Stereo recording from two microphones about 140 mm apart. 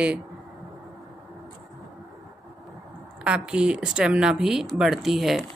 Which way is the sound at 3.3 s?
5° right (ahead or behind).